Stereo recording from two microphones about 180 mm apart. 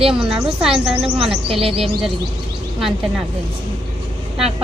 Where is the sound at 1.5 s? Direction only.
30° right (ahead or behind).